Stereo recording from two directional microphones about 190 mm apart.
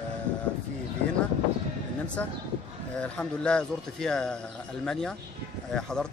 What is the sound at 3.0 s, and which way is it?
A man's voice, 5° left (ahead or behind).